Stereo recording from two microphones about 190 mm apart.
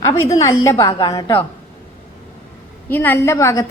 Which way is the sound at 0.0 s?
15° left (ahead or behind).